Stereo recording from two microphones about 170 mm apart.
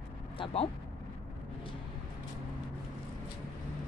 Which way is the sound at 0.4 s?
35° left (ahead or behind).